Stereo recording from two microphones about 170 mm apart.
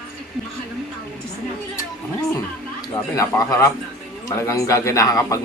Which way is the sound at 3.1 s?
20° left (ahead or behind).